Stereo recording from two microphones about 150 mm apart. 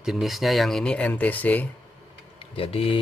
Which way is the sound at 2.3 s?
40° left (ahead or behind).